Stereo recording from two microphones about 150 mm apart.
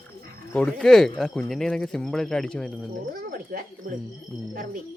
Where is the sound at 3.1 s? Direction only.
80° right.